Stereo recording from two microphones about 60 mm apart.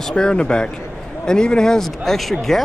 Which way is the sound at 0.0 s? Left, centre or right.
Centre.